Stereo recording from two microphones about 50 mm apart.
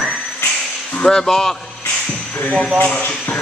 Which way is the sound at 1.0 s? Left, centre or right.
Centre.